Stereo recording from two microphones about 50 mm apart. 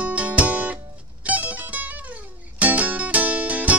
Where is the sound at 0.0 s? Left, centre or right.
Right.